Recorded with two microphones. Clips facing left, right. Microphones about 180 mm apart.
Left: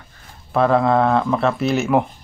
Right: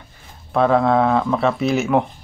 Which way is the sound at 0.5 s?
Centre (ahead or behind).